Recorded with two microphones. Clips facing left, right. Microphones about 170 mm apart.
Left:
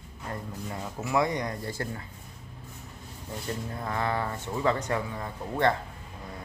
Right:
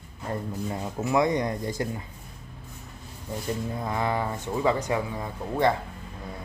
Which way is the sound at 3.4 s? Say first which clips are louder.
Right 4 dB; 15° right (ahead or behind).